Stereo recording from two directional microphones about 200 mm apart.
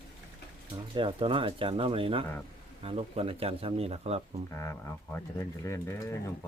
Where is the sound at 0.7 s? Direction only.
25° right (ahead or behind).